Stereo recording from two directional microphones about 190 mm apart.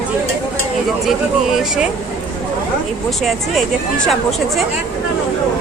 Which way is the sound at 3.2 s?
Centre (ahead or behind).